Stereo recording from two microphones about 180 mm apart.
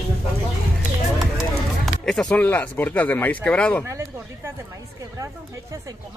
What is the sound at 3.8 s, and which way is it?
Speech, 15° right (ahead or behind).